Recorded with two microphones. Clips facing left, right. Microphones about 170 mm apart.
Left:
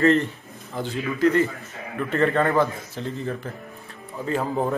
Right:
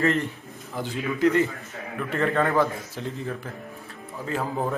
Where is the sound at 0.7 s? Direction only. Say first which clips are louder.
Left 1 dB; 15° right (ahead or behind).